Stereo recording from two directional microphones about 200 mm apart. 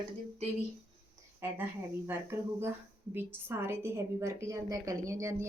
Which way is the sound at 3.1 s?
10° right (ahead or behind).